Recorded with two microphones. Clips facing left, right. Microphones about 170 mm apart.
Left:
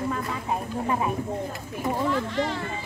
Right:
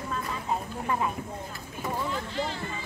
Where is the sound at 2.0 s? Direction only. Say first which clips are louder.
Left 6 dB; 75° left (ahead or behind).